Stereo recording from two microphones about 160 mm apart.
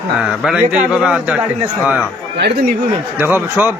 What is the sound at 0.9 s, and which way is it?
Speech, 5° right (ahead or behind).